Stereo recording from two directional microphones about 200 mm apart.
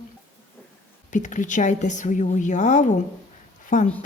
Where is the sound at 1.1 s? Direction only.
40° left (ahead or behind).